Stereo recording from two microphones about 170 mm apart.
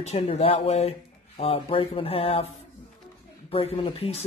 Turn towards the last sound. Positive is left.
turn(degrees=35)  # may be behind; listen again after turning